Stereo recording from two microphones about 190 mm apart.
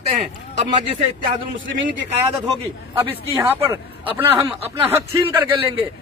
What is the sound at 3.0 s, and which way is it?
Speech, 10° right (ahead or behind).